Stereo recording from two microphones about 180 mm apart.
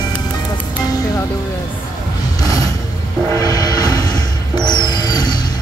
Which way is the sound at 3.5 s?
20° left (ahead or behind).